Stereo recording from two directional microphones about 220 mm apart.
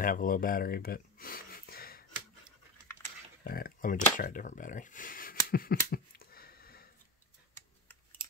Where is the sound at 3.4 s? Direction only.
45° left (ahead or behind).